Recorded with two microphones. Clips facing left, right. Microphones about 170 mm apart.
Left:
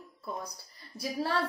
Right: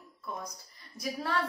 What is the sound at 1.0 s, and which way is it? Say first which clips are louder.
Speech: left 2 dB; 30° left (ahead or behind).